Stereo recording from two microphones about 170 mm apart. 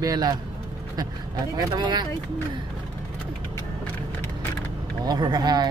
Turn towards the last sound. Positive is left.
turn(degrees=-25)  # may be behind; listen again after turning